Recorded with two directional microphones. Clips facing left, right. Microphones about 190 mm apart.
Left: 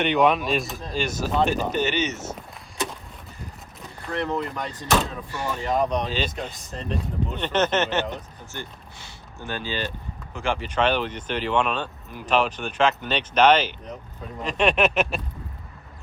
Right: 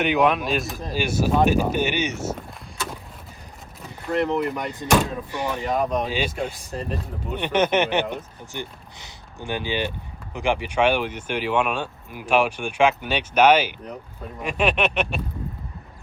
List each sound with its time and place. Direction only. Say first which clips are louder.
0.0 s speech: even; 5° right (ahead or behind)
4.4 s speech: right 4 dB; 15° right (ahead or behind)
5.7 s speech: left 1 dB; 5° right (ahead or behind)
14.4 s a sound: left 1 dB; 5° right (ahead or behind)